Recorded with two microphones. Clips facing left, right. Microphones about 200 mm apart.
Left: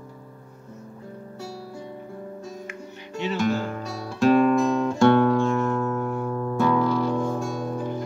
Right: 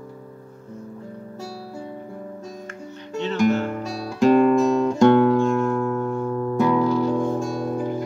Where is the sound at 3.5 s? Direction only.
20° right (ahead or behind).